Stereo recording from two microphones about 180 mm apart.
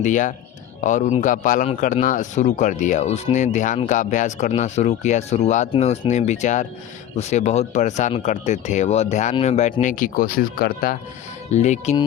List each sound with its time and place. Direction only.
0.0 s a man's voice: 45° left (ahead or behind)
9.8 s a man's voice: 50° left (ahead or behind)
11.5 s speech: 40° left (ahead or behind)